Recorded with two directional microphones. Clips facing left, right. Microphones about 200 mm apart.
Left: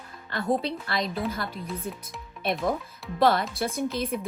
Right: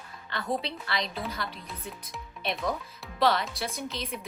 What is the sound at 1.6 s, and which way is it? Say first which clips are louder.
Speech: left 7 dB; centre (ahead or behind).